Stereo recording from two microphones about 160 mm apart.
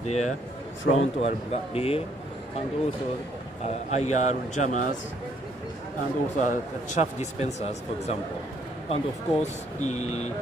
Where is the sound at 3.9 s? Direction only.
45° left (ahead or behind).